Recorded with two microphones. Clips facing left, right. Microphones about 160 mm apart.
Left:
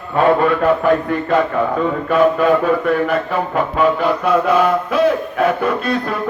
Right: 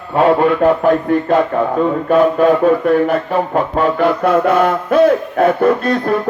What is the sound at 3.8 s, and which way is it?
Mantra, 50° right (ahead or behind).